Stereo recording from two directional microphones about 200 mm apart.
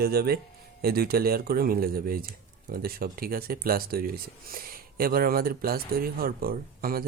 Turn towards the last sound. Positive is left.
turn(degrees=-50)  # may be behind; listen again after turning